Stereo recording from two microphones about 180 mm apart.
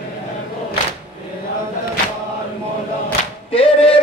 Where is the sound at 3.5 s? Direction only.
30° left (ahead or behind).